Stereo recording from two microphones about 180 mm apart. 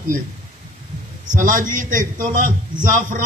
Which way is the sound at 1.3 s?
45° right (ahead or behind).